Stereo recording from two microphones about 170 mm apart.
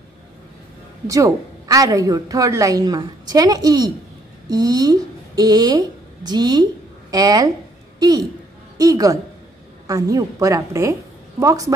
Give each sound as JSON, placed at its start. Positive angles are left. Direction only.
{"t": 1.0, "sound": "a woman's voice", "side_deg": -20}